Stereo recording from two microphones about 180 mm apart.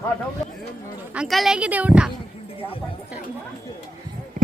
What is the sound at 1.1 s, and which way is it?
Speech, centre (ahead or behind).